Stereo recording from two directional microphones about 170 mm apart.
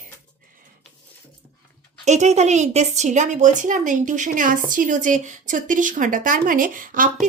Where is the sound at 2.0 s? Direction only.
40° right (ahead or behind).